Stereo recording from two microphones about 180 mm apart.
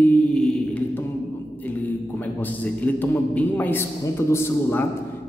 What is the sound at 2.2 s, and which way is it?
A man's voice, 10° left (ahead or behind).